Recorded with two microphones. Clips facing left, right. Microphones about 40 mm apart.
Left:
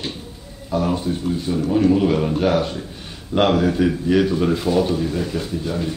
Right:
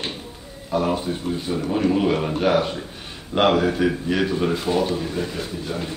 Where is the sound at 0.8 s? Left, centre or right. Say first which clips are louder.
Left 1 dB; centre.